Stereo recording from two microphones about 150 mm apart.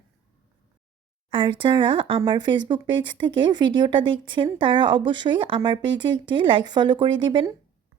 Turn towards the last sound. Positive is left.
turn(degrees=-30)  # may be behind; listen again after turning